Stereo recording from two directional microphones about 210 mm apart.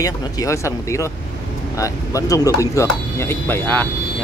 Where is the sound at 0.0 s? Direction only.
15° left (ahead or behind).